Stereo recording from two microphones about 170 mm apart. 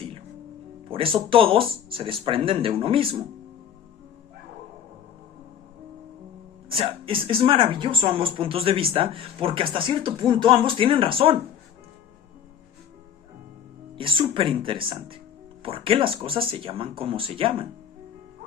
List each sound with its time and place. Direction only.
0.9 s a woman's voice: 30° right (ahead or behind)
6.7 s a woman's voice: 30° right (ahead or behind)
13.9 s a woman's voice: 30° right (ahead or behind)